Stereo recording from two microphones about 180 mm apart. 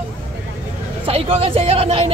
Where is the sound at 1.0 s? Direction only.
30° right (ahead or behind).